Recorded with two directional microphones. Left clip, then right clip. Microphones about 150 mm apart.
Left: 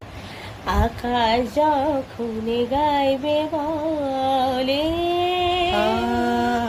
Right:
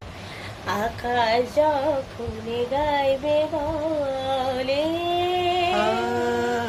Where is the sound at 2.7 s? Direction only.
60° left (ahead or behind).